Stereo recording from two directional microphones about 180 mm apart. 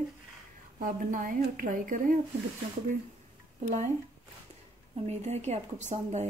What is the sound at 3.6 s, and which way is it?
Speech, 45° right (ahead or behind).